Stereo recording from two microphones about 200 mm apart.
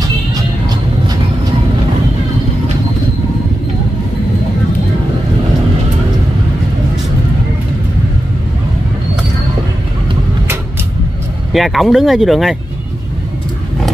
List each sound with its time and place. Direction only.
0.3 s music: 20° right (ahead or behind)
11.5 s speech: centre (ahead or behind)